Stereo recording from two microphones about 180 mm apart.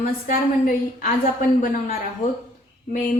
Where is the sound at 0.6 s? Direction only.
50° left (ahead or behind).